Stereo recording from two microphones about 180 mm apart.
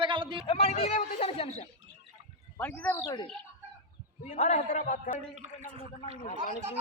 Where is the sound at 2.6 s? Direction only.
10° left (ahead or behind).